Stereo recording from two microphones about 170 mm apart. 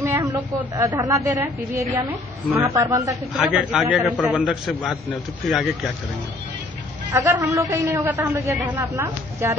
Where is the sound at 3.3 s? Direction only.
Centre (ahead or behind).